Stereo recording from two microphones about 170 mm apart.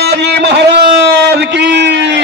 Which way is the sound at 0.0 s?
75° right (ahead or behind).